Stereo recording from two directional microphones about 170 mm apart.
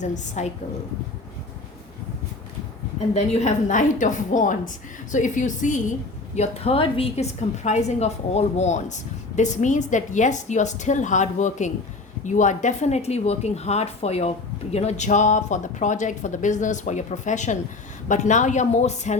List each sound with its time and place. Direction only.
0.0 s speech: 45° left (ahead or behind)
3.2 s speech: 40° left (ahead or behind)